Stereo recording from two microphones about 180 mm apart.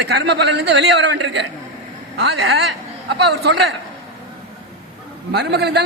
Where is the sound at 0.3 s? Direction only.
70° right (ahead or behind).